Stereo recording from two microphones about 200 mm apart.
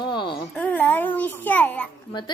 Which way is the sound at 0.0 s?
25° left (ahead or behind).